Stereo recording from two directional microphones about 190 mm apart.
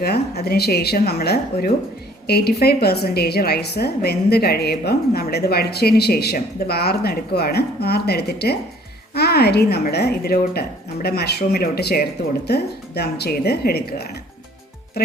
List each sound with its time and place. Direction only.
0.0 s a woman's voice: 55° left (ahead or behind)
15.0 s speech: 55° left (ahead or behind)